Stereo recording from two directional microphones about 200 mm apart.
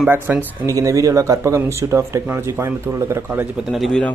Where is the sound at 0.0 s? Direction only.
10° right (ahead or behind).